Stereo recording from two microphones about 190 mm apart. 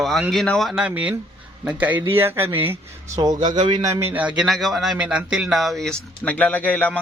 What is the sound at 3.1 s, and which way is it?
A man's voice, 20° right (ahead or behind).